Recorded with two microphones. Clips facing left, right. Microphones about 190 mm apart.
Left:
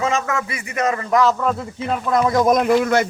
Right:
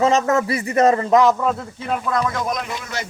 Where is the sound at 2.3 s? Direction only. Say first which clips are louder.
Left 10 dB; 50° left (ahead or behind).